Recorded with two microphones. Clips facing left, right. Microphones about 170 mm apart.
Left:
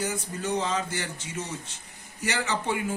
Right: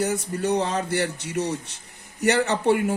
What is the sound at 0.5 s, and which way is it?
A man's voice, 65° right (ahead or behind).